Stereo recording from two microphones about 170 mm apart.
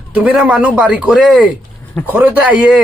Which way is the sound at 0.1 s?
10° right (ahead or behind).